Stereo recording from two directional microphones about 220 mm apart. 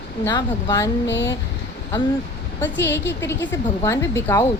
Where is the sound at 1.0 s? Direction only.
55° left (ahead or behind).